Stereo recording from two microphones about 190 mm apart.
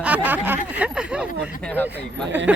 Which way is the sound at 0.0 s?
10° right (ahead or behind).